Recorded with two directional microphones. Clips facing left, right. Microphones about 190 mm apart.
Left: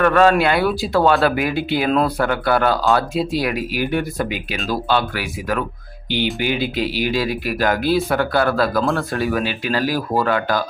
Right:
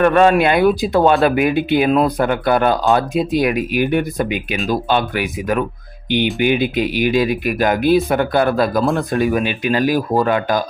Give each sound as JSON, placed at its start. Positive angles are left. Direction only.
{"t": 0.0, "sound": "speech", "side_deg": -20}